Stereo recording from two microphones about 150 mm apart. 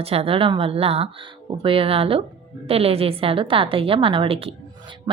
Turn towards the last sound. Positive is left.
turn(degrees=-35)  # may be behind; listen again after turning